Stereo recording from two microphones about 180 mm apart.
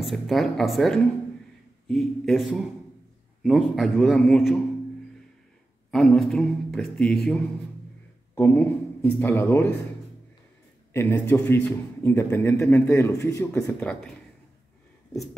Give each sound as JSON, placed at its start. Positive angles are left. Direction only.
{"t": 0.0, "sound": "a man's voice", "side_deg": 0}
{"t": 5.9, "sound": "a man's voice", "side_deg": 0}
{"t": 10.9, "sound": "a man's voice", "side_deg": 10}
{"t": 13.7, "sound": "a man's voice", "side_deg": 5}